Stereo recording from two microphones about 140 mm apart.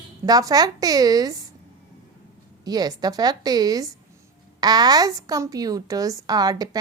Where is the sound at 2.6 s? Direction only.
30° right (ahead or behind).